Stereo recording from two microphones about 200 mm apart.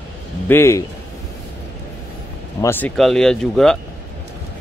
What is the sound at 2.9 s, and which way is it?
Speech, centre (ahead or behind).